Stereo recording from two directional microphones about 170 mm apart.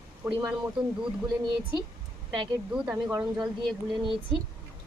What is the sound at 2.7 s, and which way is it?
Speech, 10° right (ahead or behind).